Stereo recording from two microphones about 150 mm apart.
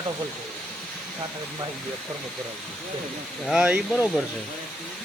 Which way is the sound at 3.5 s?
5° right (ahead or behind).